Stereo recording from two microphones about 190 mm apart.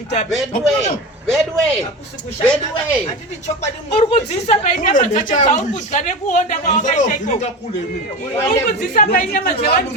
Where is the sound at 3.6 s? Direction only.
35° left (ahead or behind).